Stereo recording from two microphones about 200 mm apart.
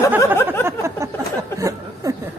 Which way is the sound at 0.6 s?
15° right (ahead or behind).